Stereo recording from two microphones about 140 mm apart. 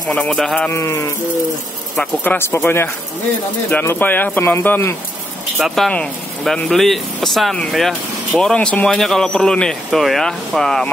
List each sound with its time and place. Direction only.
0.0 s speech: 10° left (ahead or behind)
0.7 s speech: 20° left (ahead or behind)
5.6 s a man's voice: 5° left (ahead or behind)